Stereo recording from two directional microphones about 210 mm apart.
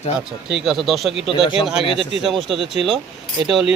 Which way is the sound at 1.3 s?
25° left (ahead or behind).